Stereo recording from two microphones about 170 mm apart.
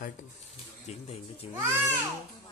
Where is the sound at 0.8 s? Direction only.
40° left (ahead or behind).